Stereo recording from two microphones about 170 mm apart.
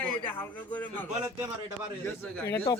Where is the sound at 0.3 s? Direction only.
10° left (ahead or behind).